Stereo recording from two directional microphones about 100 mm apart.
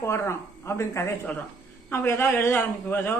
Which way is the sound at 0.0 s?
25° left (ahead or behind).